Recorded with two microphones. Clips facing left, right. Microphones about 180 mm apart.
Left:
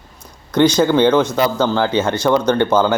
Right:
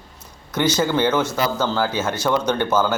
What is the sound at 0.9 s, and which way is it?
Speech, 15° left (ahead or behind).